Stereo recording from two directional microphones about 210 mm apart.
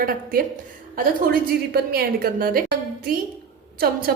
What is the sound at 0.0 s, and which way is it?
A woman's voice, 45° right (ahead or behind).